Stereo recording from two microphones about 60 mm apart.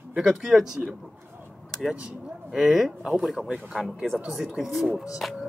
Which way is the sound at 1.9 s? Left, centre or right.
Centre.